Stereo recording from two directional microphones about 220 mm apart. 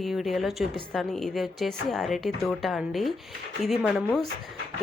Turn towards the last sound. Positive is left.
turn(degrees=0)  # may be behind; listen again after turning